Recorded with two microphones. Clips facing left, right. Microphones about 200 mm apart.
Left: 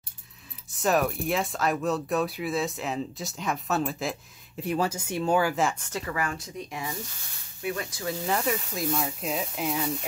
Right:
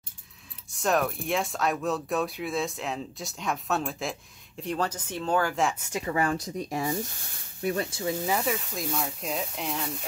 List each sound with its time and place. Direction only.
0.7 s speech: centre (ahead or behind)
5.8 s speech: 10° right (ahead or behind)
6.0 s speech: 30° right (ahead or behind)
8.3 s speech: centre (ahead or behind)